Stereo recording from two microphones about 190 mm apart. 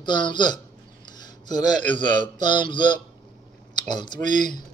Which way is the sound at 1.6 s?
25° left (ahead or behind).